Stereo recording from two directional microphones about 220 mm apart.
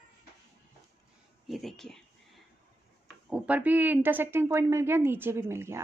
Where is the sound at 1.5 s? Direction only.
Centre (ahead or behind).